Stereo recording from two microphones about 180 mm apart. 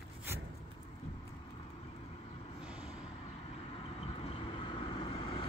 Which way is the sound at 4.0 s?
30° left (ahead or behind).